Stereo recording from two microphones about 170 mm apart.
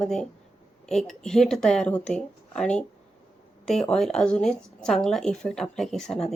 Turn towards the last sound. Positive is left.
turn(degrees=5)  # may be behind; listen again after turning